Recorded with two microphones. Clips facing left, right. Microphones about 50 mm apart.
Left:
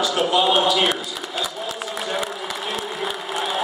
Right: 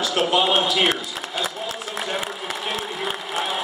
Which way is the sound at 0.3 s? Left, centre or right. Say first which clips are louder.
Left 3 dB; right.